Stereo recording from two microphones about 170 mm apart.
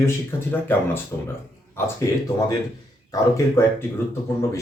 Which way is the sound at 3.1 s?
20° left (ahead or behind).